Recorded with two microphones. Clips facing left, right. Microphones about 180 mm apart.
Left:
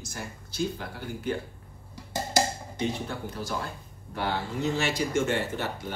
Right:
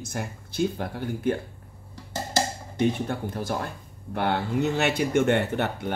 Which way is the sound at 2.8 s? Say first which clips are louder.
Right 6 dB; 55° right (ahead or behind).